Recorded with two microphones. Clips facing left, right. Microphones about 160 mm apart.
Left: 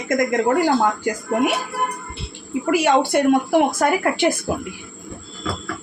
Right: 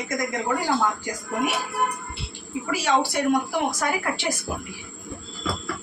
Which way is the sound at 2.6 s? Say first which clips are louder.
Left 6 dB; 55° left (ahead or behind).